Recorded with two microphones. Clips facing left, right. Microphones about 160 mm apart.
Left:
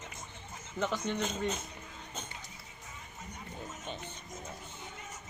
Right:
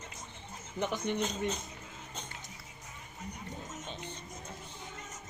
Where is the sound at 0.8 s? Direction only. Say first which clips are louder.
Even; 15° right (ahead or behind).